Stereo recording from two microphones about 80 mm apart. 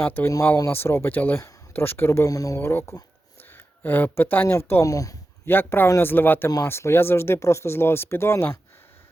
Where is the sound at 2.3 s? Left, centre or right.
Left.